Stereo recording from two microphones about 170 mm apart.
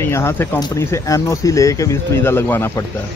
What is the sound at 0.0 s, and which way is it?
Speech, 15° left (ahead or behind).